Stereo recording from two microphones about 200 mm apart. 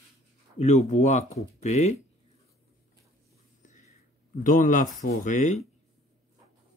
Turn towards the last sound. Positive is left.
turn(degrees=40)  # may be behind; listen again after turning